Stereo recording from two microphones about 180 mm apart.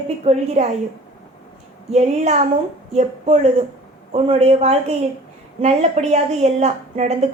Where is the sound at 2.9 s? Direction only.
35° right (ahead or behind).